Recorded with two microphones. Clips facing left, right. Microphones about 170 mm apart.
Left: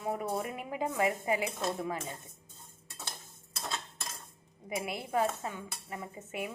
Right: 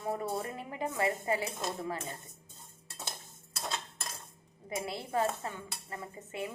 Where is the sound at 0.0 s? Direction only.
15° left (ahead or behind).